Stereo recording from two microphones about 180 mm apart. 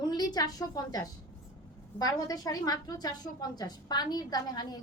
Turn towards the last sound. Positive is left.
turn(degrees=20)  # may be behind; listen again after turning